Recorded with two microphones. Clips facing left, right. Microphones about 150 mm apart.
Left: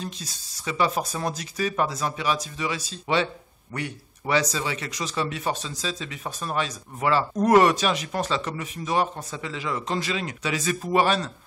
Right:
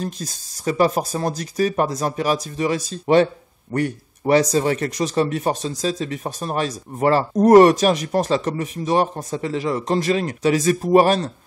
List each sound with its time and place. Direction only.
0.0 s speech: 45° right (ahead or behind)